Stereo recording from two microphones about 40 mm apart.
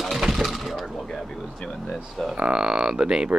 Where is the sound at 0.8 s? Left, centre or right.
Centre.